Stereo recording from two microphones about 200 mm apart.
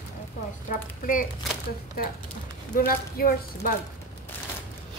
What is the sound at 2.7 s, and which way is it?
Speech, 50° left (ahead or behind).